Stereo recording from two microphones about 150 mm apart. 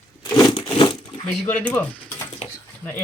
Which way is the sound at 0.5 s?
35° left (ahead or behind).